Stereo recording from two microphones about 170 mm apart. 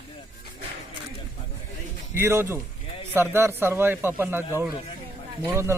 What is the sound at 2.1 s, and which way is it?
Speech, 15° right (ahead or behind).